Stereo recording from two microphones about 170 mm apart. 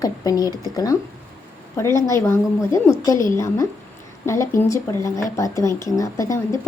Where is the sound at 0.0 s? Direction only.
20° left (ahead or behind).